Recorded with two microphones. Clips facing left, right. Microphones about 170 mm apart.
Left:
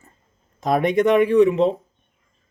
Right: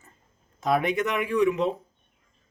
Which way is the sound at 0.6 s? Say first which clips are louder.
Left 6 dB; 35° left (ahead or behind).